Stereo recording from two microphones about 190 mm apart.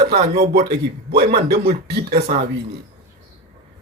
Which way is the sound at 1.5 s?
35° right (ahead or behind).